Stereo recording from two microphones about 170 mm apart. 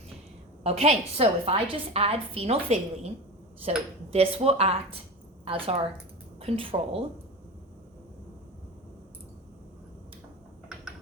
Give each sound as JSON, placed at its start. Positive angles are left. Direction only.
{"t": 0.6, "sound": "a woman's voice", "side_deg": -35}
{"t": 4.1, "sound": "a woman's voice", "side_deg": -35}